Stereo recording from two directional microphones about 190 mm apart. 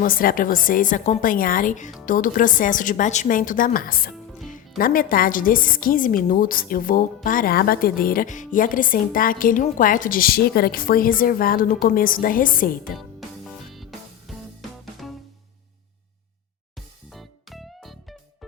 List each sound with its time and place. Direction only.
0.0 s a woman's voice: 50° left (ahead or behind)
13.0 s music: centre (ahead or behind)
17.1 s music: centre (ahead or behind)